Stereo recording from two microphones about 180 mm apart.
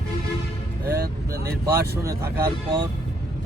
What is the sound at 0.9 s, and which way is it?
Speech, 60° right (ahead or behind).